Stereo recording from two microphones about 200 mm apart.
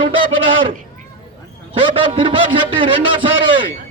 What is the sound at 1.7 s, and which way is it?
A man's voice, 25° right (ahead or behind).